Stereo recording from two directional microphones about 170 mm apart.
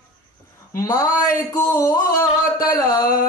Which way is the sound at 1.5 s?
15° left (ahead or behind).